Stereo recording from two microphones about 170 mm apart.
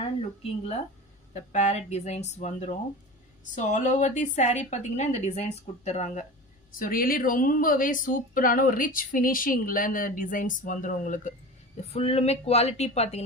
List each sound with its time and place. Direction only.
0.2 s speech: 35° left (ahead or behind)
6.7 s speech: 55° left (ahead or behind); by 13.2 s 40° left (ahead or behind)